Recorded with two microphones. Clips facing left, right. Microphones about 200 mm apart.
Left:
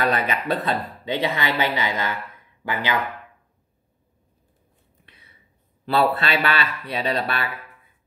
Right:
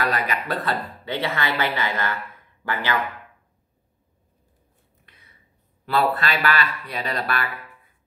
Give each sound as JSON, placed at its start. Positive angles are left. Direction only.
{"t": 0.0, "sound": "speech", "side_deg": 25}
{"t": 5.9, "sound": "speech", "side_deg": 30}